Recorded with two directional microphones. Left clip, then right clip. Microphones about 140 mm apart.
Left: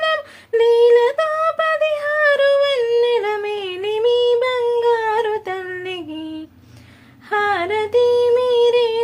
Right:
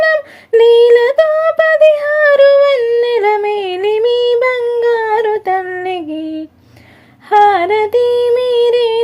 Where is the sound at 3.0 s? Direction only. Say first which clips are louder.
Right 5 dB; 50° right (ahead or behind).